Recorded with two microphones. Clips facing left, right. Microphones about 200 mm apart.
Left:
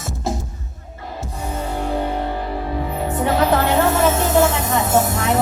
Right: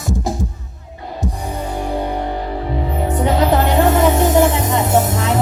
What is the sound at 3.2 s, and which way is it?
Music, 20° right (ahead or behind).